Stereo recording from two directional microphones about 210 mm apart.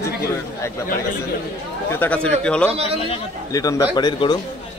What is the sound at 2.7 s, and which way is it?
Speech, 30° right (ahead or behind).